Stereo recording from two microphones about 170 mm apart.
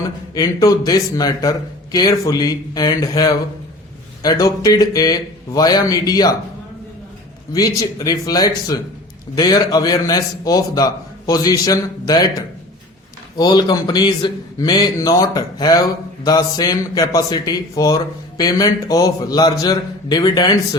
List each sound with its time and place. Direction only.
0.3 s a man's voice: 20° left (ahead or behind)
7.5 s a man's voice: 20° left (ahead or behind)
13.3 s a man's voice: 25° left (ahead or behind)